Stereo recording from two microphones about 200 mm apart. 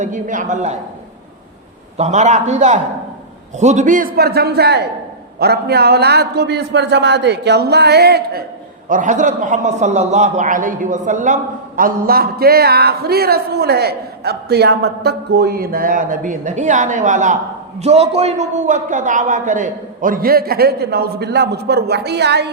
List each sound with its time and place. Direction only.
0.0 s a man's voice: 40° right (ahead or behind)
2.0 s a man's voice: 35° right (ahead or behind); by 8.4 s 50° right (ahead or behind)
8.9 s a man's voice: 40° right (ahead or behind); by 22.4 s 55° right (ahead or behind)